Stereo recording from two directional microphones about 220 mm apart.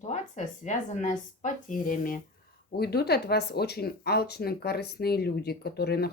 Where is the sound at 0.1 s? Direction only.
35° left (ahead or behind).